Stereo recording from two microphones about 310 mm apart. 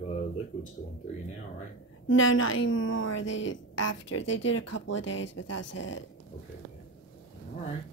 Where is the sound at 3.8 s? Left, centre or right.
Left.